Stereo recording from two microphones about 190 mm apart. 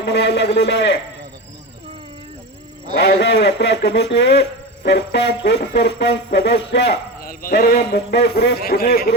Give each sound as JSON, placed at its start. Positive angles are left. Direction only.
{"t": 0.0, "sound": "a man's voice", "side_deg": 65}
{"t": 3.0, "sound": "a man's voice", "side_deg": 60}